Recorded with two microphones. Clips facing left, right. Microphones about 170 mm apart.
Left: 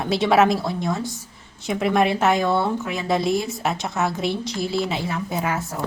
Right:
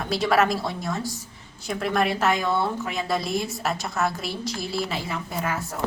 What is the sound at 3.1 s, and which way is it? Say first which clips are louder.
A woman's voice: left 7 dB; centre (ahead or behind).